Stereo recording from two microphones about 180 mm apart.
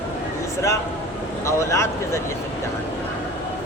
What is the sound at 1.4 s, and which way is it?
Speech, 15° left (ahead or behind).